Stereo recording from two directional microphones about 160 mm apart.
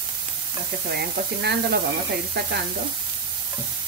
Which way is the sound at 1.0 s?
90° right.